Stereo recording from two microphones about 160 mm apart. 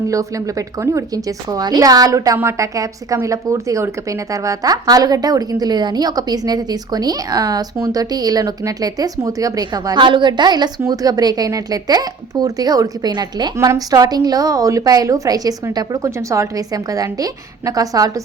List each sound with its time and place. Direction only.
0.1 s speech: 20° right (ahead or behind)